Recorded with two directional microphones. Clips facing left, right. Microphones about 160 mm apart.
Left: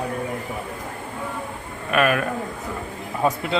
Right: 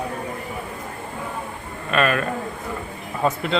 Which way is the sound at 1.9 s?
10° left (ahead or behind).